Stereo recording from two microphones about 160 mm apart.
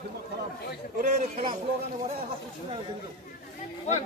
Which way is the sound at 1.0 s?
45° right (ahead or behind).